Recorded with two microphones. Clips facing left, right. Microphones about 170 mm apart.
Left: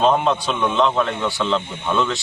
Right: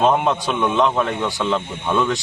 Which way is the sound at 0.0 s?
15° right (ahead or behind).